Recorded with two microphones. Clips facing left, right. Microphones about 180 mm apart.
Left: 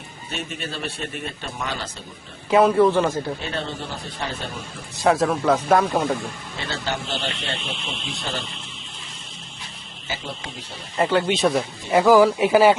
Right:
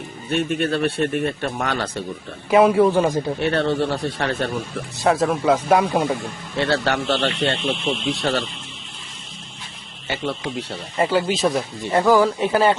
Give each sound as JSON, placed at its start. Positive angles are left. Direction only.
{"t": 0.3, "sound": "speech", "side_deg": -60}
{"t": 2.5, "sound": "a man's voice", "side_deg": -10}
{"t": 3.4, "sound": "a man's voice", "side_deg": -70}
{"t": 4.9, "sound": "a man's voice", "side_deg": 0}
{"t": 6.6, "sound": "a man's voice", "side_deg": -65}
{"t": 10.9, "sound": "speech", "side_deg": -5}